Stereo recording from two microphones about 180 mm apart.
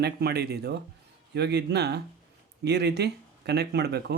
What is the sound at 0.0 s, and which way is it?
Speech, 65° right (ahead or behind).